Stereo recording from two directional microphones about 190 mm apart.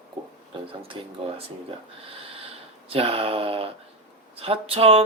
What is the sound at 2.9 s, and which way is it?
Speech, 30° right (ahead or behind).